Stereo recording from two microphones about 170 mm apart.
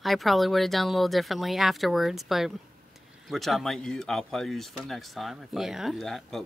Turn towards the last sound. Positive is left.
turn(degrees=0)  # may be behind; listen again after turning